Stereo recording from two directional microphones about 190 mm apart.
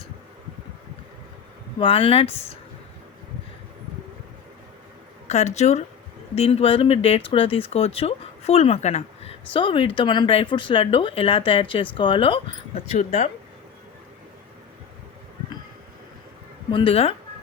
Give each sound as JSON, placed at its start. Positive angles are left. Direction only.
{"t": 1.8, "sound": "speech", "side_deg": 30}
{"t": 5.3, "sound": "speech", "side_deg": 35}
{"t": 12.9, "sound": "speech", "side_deg": 40}
{"t": 16.7, "sound": "speech", "side_deg": 30}